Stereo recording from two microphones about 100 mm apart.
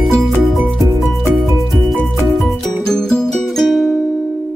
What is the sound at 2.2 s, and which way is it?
Music, centre (ahead or behind).